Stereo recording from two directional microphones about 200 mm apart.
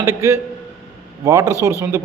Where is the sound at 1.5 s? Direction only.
15° left (ahead or behind).